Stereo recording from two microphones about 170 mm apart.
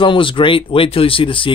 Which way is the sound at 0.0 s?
30° left (ahead or behind).